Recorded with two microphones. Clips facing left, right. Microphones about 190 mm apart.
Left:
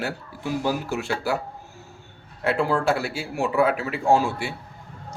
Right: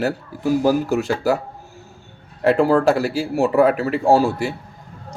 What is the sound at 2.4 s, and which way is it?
Speech, 40° right (ahead or behind).